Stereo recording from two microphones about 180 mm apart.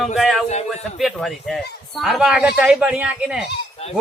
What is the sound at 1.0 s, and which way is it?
Speech, centre (ahead or behind).